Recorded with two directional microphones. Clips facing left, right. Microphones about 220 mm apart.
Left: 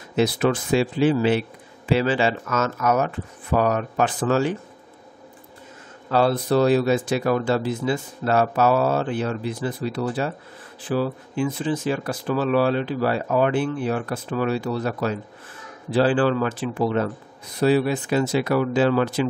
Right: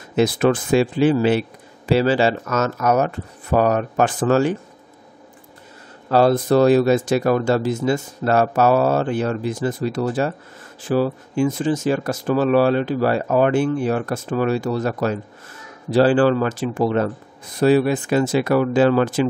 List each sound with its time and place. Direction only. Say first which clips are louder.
0.1 s speech: right 3 dB; 50° right (ahead or behind)
6.0 s speech: right 4 dB; 40° right (ahead or behind)